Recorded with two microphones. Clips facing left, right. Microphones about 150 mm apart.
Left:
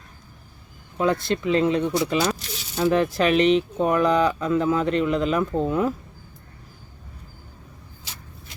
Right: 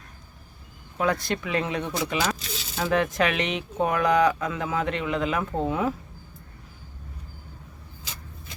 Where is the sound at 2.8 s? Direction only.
35° left (ahead or behind).